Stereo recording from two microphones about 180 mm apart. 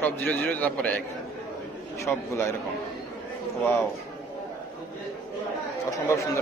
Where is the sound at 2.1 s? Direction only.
10° left (ahead or behind).